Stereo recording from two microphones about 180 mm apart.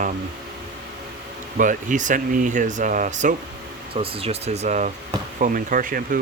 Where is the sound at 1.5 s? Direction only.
45° right (ahead or behind).